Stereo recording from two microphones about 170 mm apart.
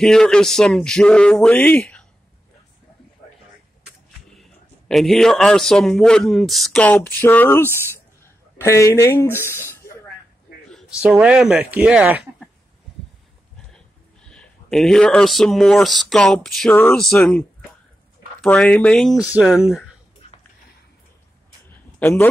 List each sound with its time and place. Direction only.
0.0 s a man's voice: 5° left (ahead or behind)
4.4 s a man's voice: centre (ahead or behind)
10.7 s speech: centre (ahead or behind)
13.7 s speech: 5° left (ahead or behind)
16.7 s a man's voice: 10° left (ahead or behind); by 19.9 s 5° right (ahead or behind)
22.0 s speech: 10° left (ahead or behind)